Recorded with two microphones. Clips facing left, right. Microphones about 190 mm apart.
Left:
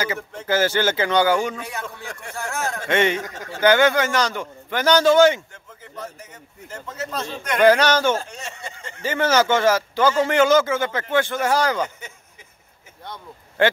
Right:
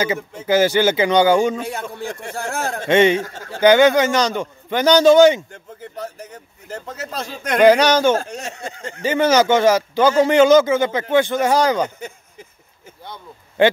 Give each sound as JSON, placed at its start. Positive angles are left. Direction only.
{"t": 0.5, "sound": "a man's voice", "side_deg": -15}
{"t": 5.5, "sound": "a man's voice", "side_deg": -35}
{"t": 7.6, "sound": "speech", "side_deg": -15}
{"t": 8.2, "sound": "a sound", "side_deg": -40}
{"t": 9.0, "sound": "speech", "side_deg": -15}
{"t": 13.6, "sound": "a man's voice", "side_deg": -20}